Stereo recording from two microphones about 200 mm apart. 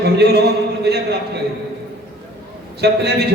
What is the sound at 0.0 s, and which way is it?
A man's voice, 55° right (ahead or behind).